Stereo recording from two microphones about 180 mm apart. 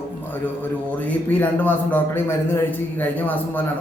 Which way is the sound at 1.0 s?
10° left (ahead or behind).